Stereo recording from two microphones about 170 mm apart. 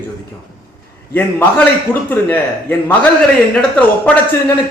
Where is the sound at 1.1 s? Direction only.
10° left (ahead or behind).